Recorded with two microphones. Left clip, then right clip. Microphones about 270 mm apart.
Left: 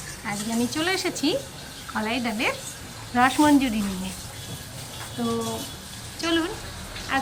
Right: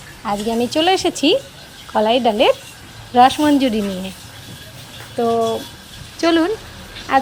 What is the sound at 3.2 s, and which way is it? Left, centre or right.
Speech, centre.